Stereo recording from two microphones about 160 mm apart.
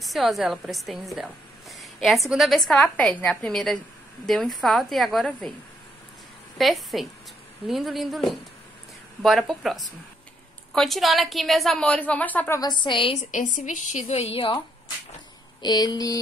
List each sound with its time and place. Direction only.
0.0 s a woman's voice: centre (ahead or behind)
6.6 s a woman's voice: centre (ahead or behind)
12.5 s a woman's voice: 25° left (ahead or behind)
13.3 s a woman's voice: 55° left (ahead or behind); by 14.6 s 35° left (ahead or behind)
15.6 s a woman's voice: 25° left (ahead or behind)